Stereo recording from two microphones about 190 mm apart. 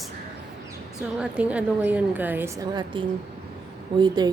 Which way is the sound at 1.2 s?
5° right (ahead or behind).